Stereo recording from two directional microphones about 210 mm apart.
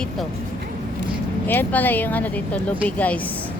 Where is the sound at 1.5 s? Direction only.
10° left (ahead or behind).